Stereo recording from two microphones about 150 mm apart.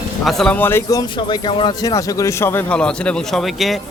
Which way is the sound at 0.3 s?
5° left (ahead or behind).